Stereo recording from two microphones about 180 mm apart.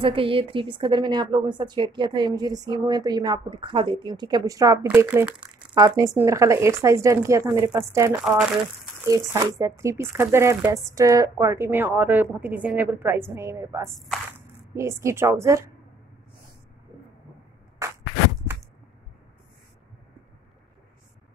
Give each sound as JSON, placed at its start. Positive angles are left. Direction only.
{"t": 0.0, "sound": "a woman's voice", "side_deg": -30}
{"t": 5.8, "sound": "speech", "side_deg": -20}
{"t": 13.9, "sound": "whip", "side_deg": 0}
{"t": 14.8, "sound": "speech", "side_deg": -15}